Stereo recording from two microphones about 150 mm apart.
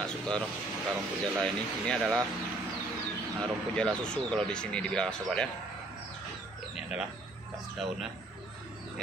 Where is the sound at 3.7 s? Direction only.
5° left (ahead or behind).